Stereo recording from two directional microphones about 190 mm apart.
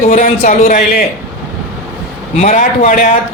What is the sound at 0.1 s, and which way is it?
Speech, 45° left (ahead or behind).